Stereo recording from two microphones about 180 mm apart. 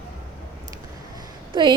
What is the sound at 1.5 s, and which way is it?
Speech, 25° right (ahead or behind).